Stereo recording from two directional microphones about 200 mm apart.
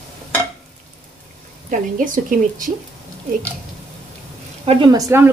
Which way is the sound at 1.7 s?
40° right (ahead or behind).